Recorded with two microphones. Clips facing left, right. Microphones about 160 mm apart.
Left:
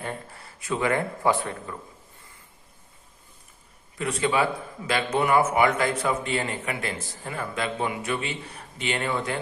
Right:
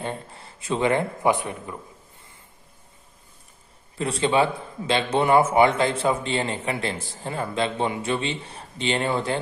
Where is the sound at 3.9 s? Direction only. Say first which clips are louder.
Right 3 dB; 30° right (ahead or behind).